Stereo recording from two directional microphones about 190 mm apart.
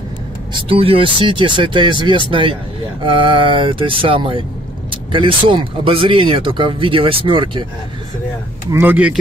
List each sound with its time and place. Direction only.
0.5 s speech: 25° right (ahead or behind)
8.7 s speech: 10° right (ahead or behind)